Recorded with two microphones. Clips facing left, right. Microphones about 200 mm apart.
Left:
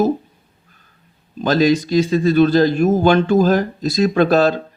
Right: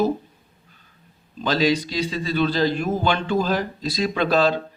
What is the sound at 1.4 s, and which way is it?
Speech, 45° left (ahead or behind).